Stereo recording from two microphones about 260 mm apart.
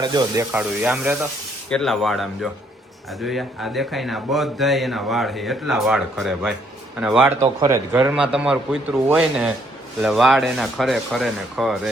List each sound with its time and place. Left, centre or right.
0.0 s speech: centre